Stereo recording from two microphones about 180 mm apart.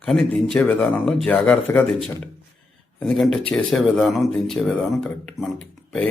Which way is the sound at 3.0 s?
Centre (ahead or behind).